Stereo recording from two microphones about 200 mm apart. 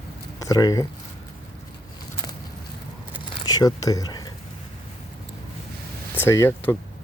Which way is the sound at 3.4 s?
20° left (ahead or behind).